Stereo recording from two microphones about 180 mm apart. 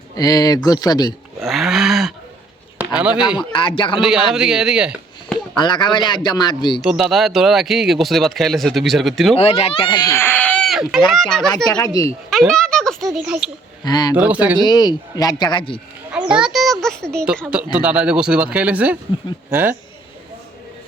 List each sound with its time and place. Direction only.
0.2 s a man's voice: 20° left (ahead or behind)
1.4 s a sound: centre (ahead or behind)
3.3 s a man's voice: 25° left (ahead or behind)
4.0 s speech: 5° right (ahead or behind)
5.5 s a man's voice: 25° left (ahead or behind)
6.8 s speech: centre (ahead or behind)
9.3 s speech: 35° left (ahead or behind); by 13.5 s 5° right (ahead or behind)
13.8 s a man's voice: 25° left (ahead or behind)
14.2 s speech: 10° right (ahead or behind)
14.6 s a man's voice: 25° left (ahead or behind)
16.1 s children playing: 5° right (ahead or behind)
17.5 s speech: 5° right (ahead or behind)